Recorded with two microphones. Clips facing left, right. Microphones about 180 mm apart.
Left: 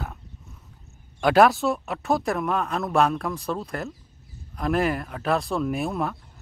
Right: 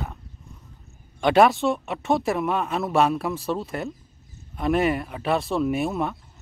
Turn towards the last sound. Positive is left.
turn(degrees=0)  # may be behind; listen again after turning